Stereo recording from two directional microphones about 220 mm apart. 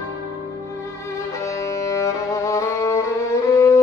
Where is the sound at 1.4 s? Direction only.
15° left (ahead or behind).